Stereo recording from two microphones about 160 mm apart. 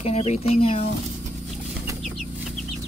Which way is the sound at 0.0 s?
40° left (ahead or behind).